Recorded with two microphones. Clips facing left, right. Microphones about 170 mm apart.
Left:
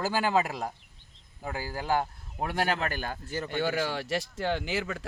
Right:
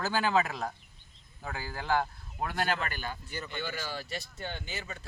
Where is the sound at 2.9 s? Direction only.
45° left (ahead or behind).